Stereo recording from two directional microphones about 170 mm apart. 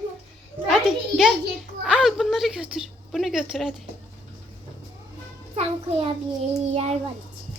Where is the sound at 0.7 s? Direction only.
Centre (ahead or behind).